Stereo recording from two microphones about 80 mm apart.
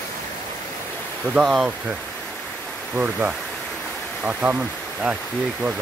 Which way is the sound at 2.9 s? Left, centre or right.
Centre.